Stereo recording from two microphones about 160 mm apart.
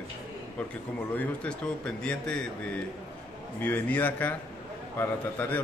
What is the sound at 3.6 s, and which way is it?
Speech, 10° left (ahead or behind).